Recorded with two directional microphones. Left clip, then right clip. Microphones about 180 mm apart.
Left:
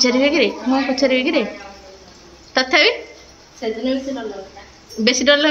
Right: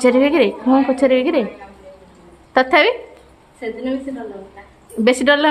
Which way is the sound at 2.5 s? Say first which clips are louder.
Right 2 dB; 35° right (ahead or behind).